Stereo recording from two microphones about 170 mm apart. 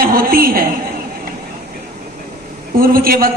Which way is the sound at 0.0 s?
60° right (ahead or behind).